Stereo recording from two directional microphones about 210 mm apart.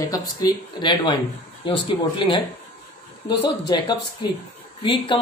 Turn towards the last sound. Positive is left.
turn(degrees=20)  # may be behind; listen again after turning